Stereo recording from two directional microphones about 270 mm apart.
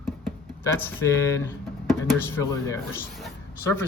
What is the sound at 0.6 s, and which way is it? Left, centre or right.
Speech, centre.